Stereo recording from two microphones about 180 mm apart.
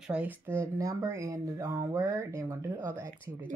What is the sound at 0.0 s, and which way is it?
Speech, 5° right (ahead or behind).